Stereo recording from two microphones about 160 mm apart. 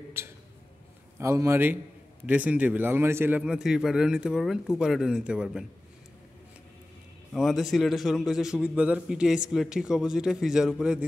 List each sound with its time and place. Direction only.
0.2 s a man's voice: 15° right (ahead or behind)
7.3 s a man's voice: centre (ahead or behind)